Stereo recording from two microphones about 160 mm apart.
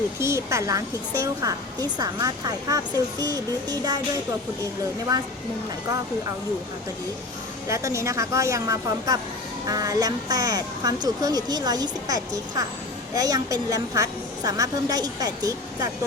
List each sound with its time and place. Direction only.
0.2 s speech: 15° right (ahead or behind)
5.1 s speech: 25° right (ahead or behind)
7.7 s speech: 20° right (ahead or behind)